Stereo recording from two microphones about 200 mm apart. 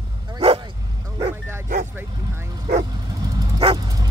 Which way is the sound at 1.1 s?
15° right (ahead or behind).